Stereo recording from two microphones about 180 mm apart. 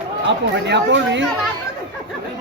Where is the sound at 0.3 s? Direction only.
75° right (ahead or behind).